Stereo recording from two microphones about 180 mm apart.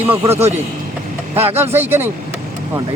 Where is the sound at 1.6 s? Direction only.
10° right (ahead or behind).